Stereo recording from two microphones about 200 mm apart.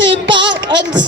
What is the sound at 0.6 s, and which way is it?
Speech, 20° right (ahead or behind).